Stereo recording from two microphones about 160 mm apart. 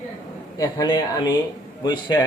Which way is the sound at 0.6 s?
25° left (ahead or behind).